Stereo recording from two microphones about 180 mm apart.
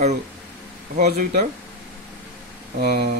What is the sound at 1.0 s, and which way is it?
Speech, 60° right (ahead or behind).